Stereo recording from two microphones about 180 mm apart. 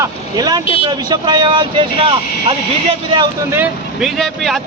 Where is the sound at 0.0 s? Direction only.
20° right (ahead or behind).